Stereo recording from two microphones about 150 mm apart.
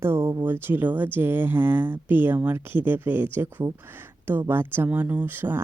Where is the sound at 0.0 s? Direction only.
15° right (ahead or behind).